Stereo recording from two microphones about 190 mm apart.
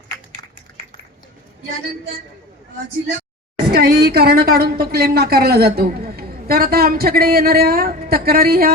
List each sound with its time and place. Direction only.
3.7 s a woman's voice: 55° right (ahead or behind)